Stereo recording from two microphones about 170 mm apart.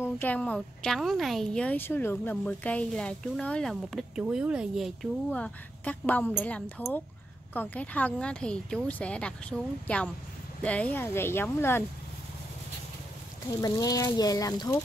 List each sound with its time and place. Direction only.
0.0 s a woman's voice: 10° left (ahead or behind)
13.6 s speech: 20° left (ahead or behind)